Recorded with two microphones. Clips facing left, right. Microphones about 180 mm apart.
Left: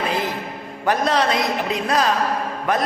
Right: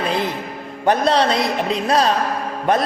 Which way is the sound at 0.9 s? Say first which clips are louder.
Right 3 dB; 30° right (ahead or behind).